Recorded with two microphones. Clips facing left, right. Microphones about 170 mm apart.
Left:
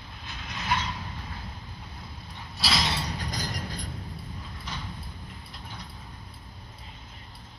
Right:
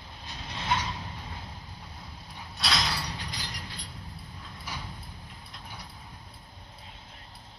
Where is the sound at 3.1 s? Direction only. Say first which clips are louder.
Left 6 dB; 45° left (ahead or behind).